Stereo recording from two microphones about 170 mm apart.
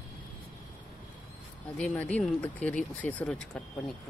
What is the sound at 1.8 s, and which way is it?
Speech, 10° left (ahead or behind).